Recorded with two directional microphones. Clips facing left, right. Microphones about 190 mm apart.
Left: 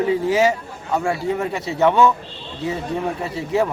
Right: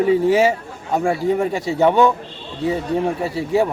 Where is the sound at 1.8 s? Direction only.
15° right (ahead or behind).